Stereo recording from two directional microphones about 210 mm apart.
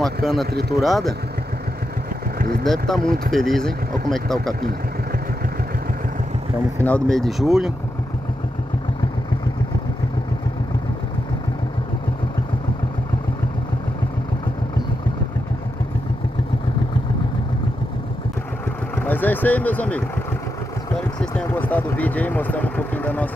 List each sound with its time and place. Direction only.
0.0 s speech: centre (ahead or behind)
0.5 s speech: 50° right (ahead or behind)
0.8 s speech: centre (ahead or behind)
2.3 s vehicle: 45° right (ahead or behind)
2.6 s speech: centre (ahead or behind)
6.8 s speech: 5° left (ahead or behind)
18.9 s vehicle: 10° left (ahead or behind)
21.2 s speech: 5° left (ahead or behind)